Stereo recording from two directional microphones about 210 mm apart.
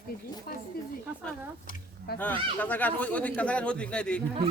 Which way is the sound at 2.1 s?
50° left (ahead or behind).